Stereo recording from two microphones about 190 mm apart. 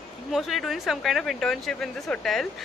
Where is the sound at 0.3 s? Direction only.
Centre (ahead or behind).